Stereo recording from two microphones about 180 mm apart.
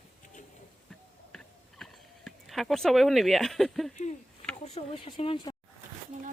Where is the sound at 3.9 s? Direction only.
40° left (ahead or behind).